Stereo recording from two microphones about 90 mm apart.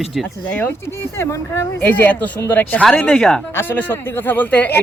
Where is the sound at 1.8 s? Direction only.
20° left (ahead or behind).